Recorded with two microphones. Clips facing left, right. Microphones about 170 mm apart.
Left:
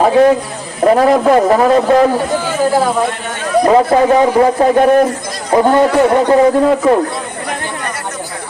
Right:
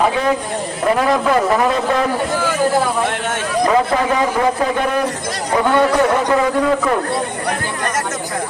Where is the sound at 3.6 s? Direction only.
35° left (ahead or behind).